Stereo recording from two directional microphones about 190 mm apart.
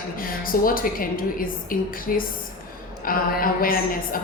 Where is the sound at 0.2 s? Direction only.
50° left (ahead or behind).